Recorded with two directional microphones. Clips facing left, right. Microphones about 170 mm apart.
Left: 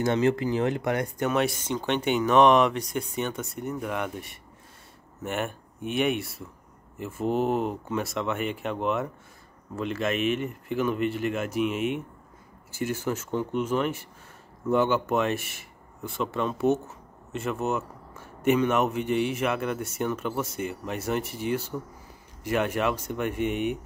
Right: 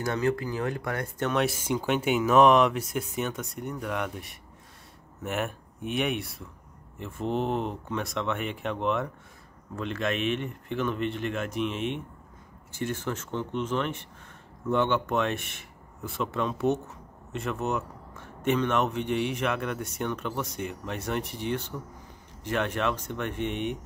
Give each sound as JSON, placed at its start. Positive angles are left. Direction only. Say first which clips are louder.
{"t": 0.0, "sound": "speech", "louder": "left 4 dB", "side_deg": 25}
{"t": 1.3, "sound": "speech", "louder": "right 1 dB", "side_deg": 0}